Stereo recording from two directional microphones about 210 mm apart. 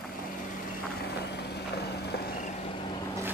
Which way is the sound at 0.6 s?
50° left (ahead or behind).